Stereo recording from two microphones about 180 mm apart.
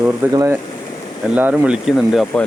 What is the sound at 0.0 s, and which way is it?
Speech, 15° right (ahead or behind).